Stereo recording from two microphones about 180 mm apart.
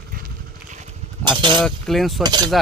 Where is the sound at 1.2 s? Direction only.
25° right (ahead or behind).